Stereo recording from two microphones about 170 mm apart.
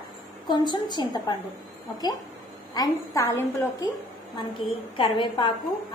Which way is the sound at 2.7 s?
20° left (ahead or behind).